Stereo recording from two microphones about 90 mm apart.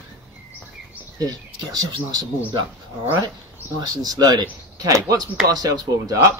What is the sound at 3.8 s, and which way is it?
Speech, 50° right (ahead or behind).